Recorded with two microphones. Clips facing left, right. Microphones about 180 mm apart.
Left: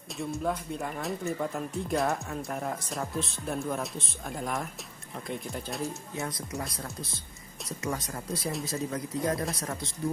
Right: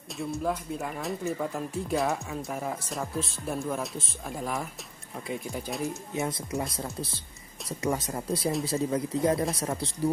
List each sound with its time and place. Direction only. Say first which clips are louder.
0.2 s speech: right 1 dB; centre (ahead or behind)
6.1 s speech: right 4 dB; 20° right (ahead or behind)
6.8 s speech: right 4 dB; 30° right (ahead or behind)